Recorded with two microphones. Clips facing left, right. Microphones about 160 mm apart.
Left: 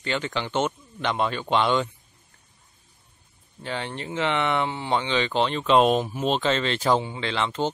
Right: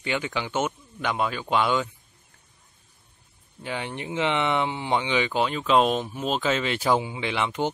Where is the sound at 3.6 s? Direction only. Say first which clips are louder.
Even; 15° right (ahead or behind).